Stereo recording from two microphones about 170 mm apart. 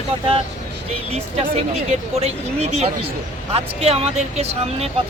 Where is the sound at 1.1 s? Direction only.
40° right (ahead or behind).